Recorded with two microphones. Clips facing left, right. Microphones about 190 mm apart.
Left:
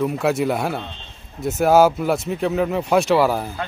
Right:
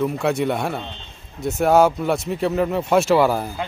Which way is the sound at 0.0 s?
Centre (ahead or behind).